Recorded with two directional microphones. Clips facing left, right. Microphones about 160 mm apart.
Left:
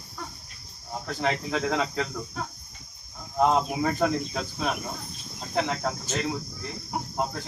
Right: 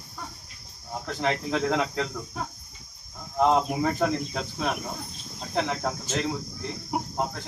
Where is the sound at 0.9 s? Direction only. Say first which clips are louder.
Even; centre (ahead or behind).